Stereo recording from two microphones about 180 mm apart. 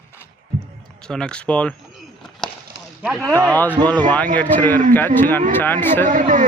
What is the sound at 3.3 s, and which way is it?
Speech, 15° right (ahead or behind).